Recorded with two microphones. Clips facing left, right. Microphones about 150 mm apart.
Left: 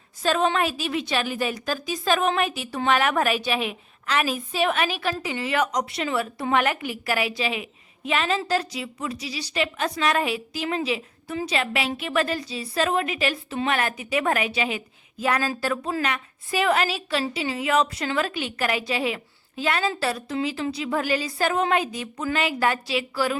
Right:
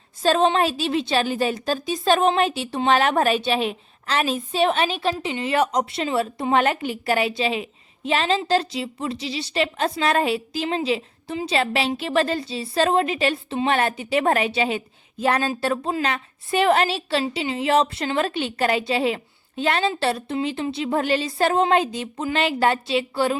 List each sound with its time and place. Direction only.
0.2 s a woman's voice: 30° right (ahead or behind)